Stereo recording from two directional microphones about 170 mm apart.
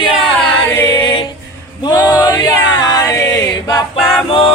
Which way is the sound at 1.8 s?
20° left (ahead or behind).